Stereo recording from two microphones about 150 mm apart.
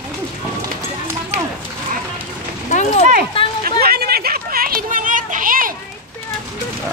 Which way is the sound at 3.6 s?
90° right.